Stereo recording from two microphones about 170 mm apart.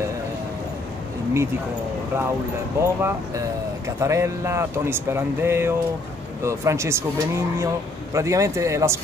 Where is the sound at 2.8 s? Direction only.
15° right (ahead or behind).